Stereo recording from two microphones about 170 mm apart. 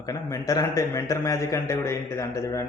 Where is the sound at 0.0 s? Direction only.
15° left (ahead or behind).